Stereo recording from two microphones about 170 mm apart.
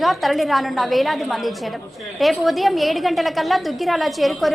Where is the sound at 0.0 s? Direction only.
Centre (ahead or behind).